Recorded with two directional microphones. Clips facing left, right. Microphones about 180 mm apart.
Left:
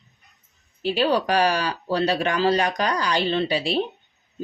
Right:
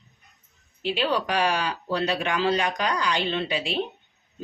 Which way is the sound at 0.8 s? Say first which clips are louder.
Left 4 dB; 40° left (ahead or behind).